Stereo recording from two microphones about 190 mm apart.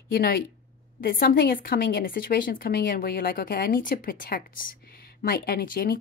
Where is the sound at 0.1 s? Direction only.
55° left (ahead or behind).